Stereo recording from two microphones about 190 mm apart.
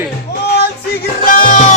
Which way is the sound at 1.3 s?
45° left (ahead or behind).